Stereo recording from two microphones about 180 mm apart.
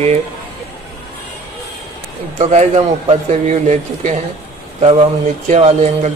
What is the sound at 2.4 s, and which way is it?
Speech, 40° right (ahead or behind).